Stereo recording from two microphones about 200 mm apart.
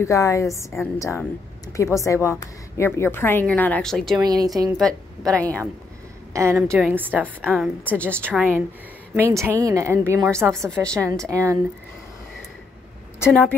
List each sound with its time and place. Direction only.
0.0 s a woman's voice: 15° left (ahead or behind)
4.2 s speech: 20° right (ahead or behind)
4.6 s a woman's voice: centre (ahead or behind)
6.3 s a woman's voice: 15° right (ahead or behind)
7.8 s a woman's voice: 5° left (ahead or behind)
8.3 s a woman's voice: 10° right (ahead or behind)
10.6 s a woman's voice: 5° left (ahead or behind)
11.2 s a woman's voice: 15° right (ahead or behind)
13.2 s a woman's voice: 5° left (ahead or behind)